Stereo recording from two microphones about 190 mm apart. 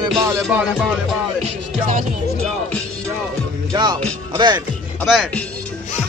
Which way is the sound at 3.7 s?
25° right (ahead or behind).